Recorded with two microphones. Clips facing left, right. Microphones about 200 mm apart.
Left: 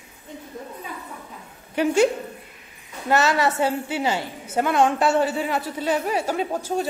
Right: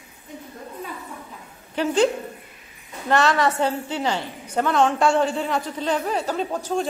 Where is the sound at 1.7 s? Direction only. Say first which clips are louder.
Left 1 dB; 10° left (ahead or behind).